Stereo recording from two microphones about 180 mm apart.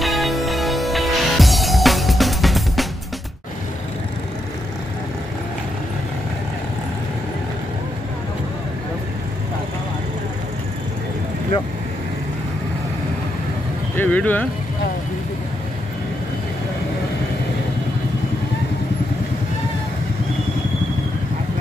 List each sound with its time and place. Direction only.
0.0 s music: centre (ahead or behind)
13.9 s vehicle: 10° left (ahead or behind)